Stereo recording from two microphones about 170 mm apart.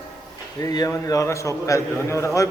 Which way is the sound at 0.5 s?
20° left (ahead or behind).